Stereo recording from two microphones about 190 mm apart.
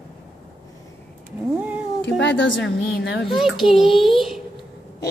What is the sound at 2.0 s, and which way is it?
Speech, 70° left (ahead or behind).